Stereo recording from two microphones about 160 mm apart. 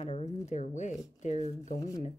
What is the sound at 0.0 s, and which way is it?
Speech, 45° left (ahead or behind).